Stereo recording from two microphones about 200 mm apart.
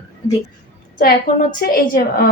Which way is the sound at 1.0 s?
45° left (ahead or behind).